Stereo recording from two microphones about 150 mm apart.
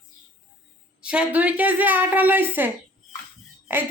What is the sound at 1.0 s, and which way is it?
A woman's voice, 5° right (ahead or behind).